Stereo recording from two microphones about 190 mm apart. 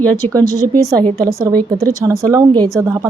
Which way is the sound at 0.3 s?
15° right (ahead or behind).